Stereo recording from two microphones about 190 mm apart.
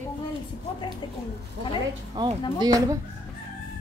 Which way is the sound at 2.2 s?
25° right (ahead or behind).